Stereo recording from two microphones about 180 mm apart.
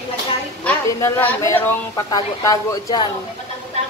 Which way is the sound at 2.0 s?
25° left (ahead or behind).